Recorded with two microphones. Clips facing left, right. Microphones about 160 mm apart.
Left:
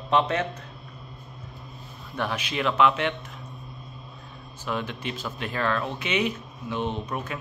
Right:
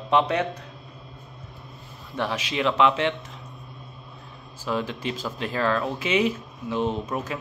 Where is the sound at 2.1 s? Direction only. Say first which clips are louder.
Right 2 dB; 25° right (ahead or behind).